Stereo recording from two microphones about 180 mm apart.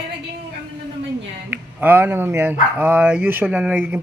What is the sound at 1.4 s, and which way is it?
Speech, 10° right (ahead or behind).